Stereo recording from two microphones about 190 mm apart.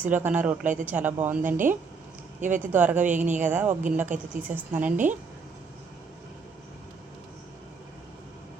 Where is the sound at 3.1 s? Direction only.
40° right (ahead or behind).